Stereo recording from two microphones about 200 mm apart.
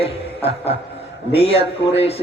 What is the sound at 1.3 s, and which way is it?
Speech, 30° left (ahead or behind).